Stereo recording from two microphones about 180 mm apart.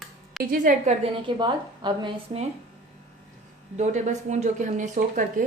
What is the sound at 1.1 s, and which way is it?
A woman's voice, 25° right (ahead or behind).